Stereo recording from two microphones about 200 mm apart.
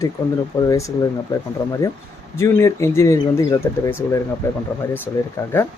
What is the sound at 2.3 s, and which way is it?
Speech, 15° left (ahead or behind).